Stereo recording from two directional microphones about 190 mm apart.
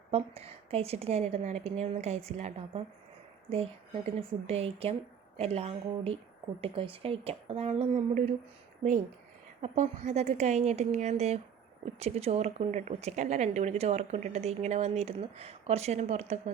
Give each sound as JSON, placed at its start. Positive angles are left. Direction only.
{"t": 0.1, "sound": "speech", "side_deg": -30}